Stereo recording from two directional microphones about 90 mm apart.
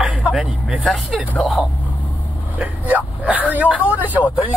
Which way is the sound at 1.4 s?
Centre (ahead or behind).